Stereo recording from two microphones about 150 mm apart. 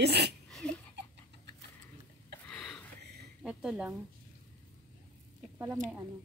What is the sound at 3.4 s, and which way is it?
Speech, 5° right (ahead or behind).